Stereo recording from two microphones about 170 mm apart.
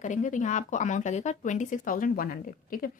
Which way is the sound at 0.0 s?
45° left (ahead or behind).